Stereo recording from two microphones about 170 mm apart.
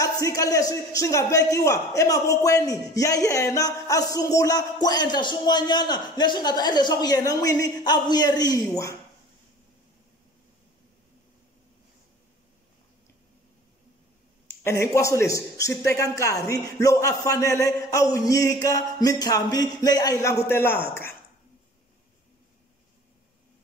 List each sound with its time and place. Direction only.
0.0 s a man's voice: 20° left (ahead or behind)
14.6 s a man's voice: 15° left (ahead or behind)